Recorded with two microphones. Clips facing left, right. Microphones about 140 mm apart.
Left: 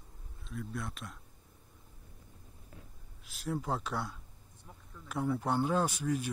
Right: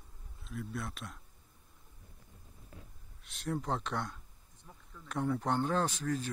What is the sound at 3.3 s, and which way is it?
Speech, centre (ahead or behind).